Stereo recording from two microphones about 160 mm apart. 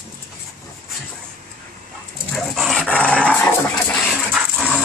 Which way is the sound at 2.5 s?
Centre (ahead or behind).